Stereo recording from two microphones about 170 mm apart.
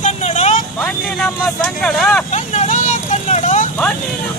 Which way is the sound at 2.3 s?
45° left (ahead or behind).